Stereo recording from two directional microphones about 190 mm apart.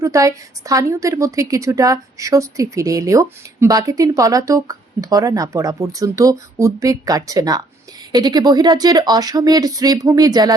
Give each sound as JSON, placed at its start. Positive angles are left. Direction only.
{"t": 0.0, "sound": "a woman's voice", "side_deg": -15}